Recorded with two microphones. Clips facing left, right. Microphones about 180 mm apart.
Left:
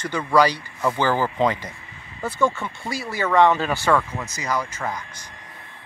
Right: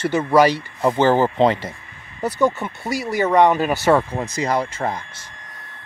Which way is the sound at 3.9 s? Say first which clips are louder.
Right 4 dB; 35° right (ahead or behind).